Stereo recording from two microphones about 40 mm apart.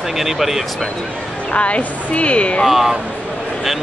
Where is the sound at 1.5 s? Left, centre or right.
Left.